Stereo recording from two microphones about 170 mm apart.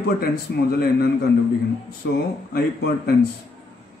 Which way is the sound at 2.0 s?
75° left (ahead or behind).